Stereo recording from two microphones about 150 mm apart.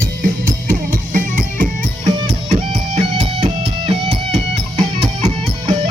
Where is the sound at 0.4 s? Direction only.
65° right (ahead or behind).